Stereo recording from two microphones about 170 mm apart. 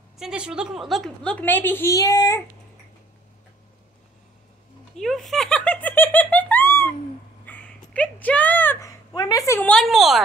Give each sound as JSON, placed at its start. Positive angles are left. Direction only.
{"t": 0.2, "sound": "a woman's voice", "side_deg": -5}
{"t": 4.9, "sound": "music", "side_deg": 0}
{"t": 7.4, "sound": "a sound", "side_deg": 10}
{"t": 9.7, "sound": "a woman's voice", "side_deg": 0}